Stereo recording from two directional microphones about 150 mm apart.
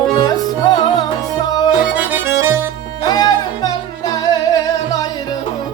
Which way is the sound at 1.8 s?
10° right (ahead or behind).